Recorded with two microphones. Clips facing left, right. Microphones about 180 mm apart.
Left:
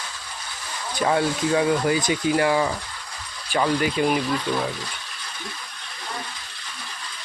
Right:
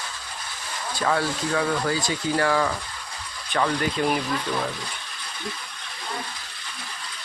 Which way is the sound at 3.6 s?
5° left (ahead or behind).